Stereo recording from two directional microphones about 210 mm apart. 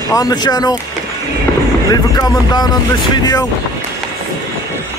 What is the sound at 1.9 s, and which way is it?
Speech, 20° left (ahead or behind).